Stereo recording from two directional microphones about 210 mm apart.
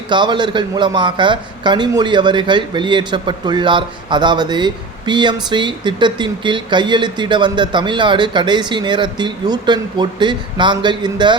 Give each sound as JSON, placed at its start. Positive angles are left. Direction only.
{"t": 0.1, "sound": "a man's voice", "side_deg": -20}